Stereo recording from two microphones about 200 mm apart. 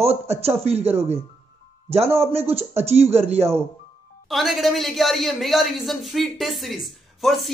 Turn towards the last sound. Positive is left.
turn(degrees=0)  # may be behind; listen again after turning